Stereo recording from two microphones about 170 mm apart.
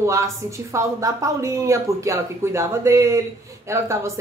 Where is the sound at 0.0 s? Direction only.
15° right (ahead or behind).